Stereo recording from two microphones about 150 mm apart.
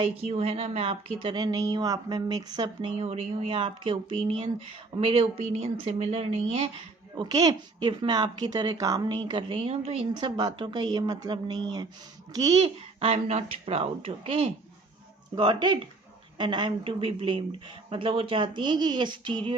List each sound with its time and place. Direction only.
0.0 s speech: 45° right (ahead or behind); by 2.9 s 30° right (ahead or behind)
3.0 s speech: 40° right (ahead or behind)
7.2 s a woman's voice: 25° right (ahead or behind); by 10.1 s 40° right (ahead or behind)
10.2 s a woman's voice: 30° right (ahead or behind)
13.0 s speech: 40° right (ahead or behind)